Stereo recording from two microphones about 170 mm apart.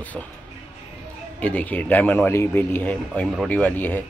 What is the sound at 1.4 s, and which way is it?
A man's voice, 10° left (ahead or behind).